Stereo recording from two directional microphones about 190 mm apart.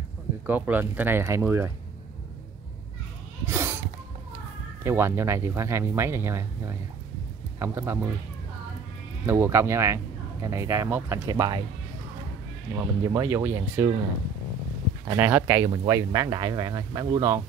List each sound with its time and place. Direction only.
0.5 s speech: 10° right (ahead or behind)
3.4 s a sound: 10° right (ahead or behind)
4.8 s speech: 15° right (ahead or behind)
9.2 s speech: 15° right (ahead or behind)
12.7 s speech: 15° right (ahead or behind)
15.0 s speech: 10° right (ahead or behind)